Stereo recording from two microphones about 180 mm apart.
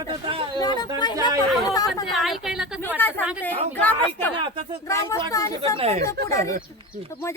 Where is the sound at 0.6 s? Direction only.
20° left (ahead or behind).